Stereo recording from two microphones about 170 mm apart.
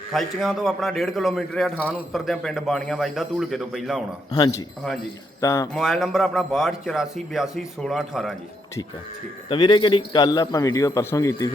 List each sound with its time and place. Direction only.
0.1 s a man's voice: centre (ahead or behind)
4.4 s a man's voice: 25° left (ahead or behind)
5.7 s a man's voice: centre (ahead or behind)
9.5 s a man's voice: 30° left (ahead or behind)